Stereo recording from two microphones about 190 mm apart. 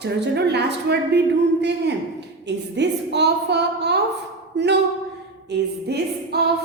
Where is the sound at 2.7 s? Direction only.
65° right (ahead or behind).